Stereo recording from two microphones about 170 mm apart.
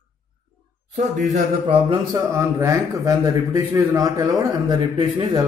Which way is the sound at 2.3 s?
15° right (ahead or behind).